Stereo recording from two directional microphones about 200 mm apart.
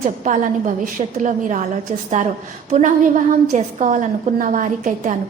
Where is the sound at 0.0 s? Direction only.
40° right (ahead or behind).